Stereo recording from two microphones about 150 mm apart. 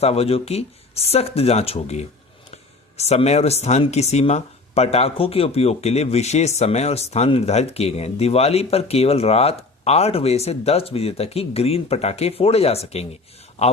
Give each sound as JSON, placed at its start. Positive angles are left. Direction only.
{"t": 0.0, "sound": "speech", "side_deg": 40}